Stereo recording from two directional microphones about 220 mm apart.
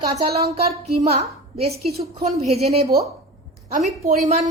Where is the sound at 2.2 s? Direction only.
30° right (ahead or behind).